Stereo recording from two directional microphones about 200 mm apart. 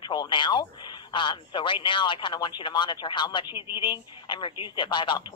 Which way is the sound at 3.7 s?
20° left (ahead or behind).